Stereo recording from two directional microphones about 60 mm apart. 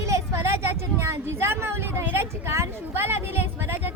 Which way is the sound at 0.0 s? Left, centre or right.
Right.